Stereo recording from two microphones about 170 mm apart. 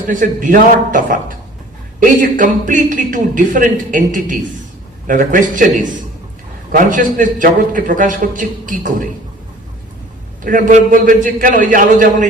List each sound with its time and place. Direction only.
0.1 s a man's voice: 50° right (ahead or behind)
10.4 s a man's voice: 50° right (ahead or behind)